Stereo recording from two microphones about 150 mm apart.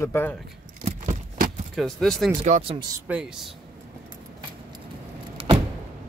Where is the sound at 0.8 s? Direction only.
60° right (ahead or behind).